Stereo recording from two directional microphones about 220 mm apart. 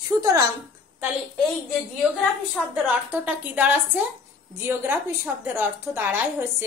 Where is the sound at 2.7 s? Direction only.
10° right (ahead or behind).